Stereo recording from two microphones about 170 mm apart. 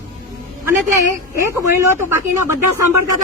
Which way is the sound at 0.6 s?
15° right (ahead or behind).